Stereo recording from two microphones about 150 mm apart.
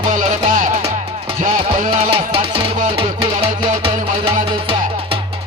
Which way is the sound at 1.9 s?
40° right (ahead or behind).